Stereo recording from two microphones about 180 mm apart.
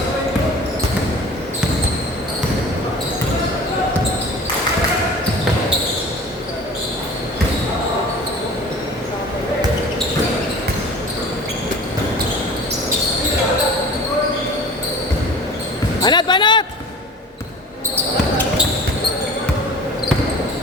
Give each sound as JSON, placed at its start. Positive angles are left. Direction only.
{"t": 16.0, "sound": "basketball bounce", "side_deg": 25}